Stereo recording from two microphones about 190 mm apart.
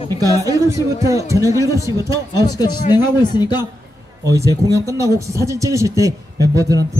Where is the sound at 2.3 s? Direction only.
20° left (ahead or behind).